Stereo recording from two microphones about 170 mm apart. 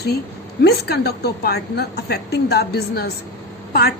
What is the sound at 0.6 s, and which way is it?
A woman's voice, 75° left (ahead or behind).